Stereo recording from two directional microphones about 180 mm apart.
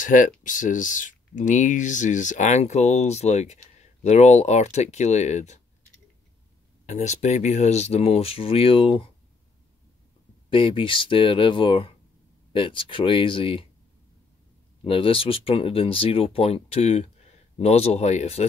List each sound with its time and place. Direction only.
0.0 s speech: 45° left (ahead or behind)
6.9 s speech: 40° left (ahead or behind)
10.5 s speech: 30° left (ahead or behind)
14.8 s speech: 30° left (ahead or behind)